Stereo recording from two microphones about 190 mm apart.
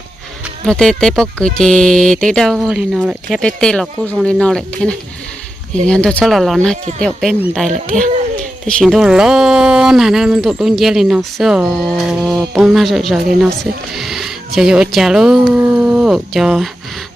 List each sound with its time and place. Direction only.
0.6 s speech: centre (ahead or behind)
7.9 s a child's voice: 40° right (ahead or behind)
8.6 s speech: centre (ahead or behind)